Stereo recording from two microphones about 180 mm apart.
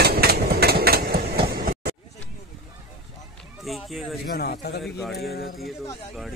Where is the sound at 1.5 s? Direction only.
60° right (ahead or behind).